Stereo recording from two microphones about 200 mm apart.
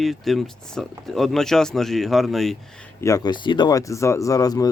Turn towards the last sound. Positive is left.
turn(degrees=20)  # may be behind; listen again after turning